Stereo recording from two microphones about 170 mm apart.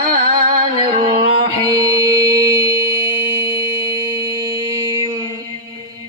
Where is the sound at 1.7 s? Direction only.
20° right (ahead or behind).